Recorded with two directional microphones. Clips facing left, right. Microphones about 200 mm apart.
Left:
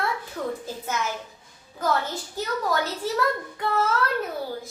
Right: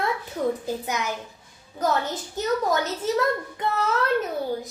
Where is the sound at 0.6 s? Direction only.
15° right (ahead or behind).